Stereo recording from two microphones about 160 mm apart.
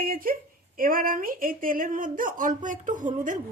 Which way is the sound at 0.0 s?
65° right (ahead or behind).